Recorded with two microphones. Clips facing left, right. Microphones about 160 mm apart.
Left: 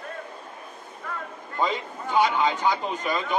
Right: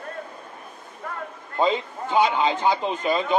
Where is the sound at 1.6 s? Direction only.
20° right (ahead or behind).